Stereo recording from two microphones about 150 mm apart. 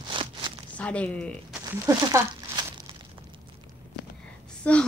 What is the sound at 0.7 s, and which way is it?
Speech, 10° left (ahead or behind).